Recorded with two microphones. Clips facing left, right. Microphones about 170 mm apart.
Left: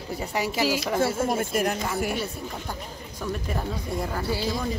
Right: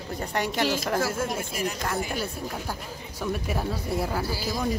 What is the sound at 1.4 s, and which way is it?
Speech, 50° left (ahead or behind).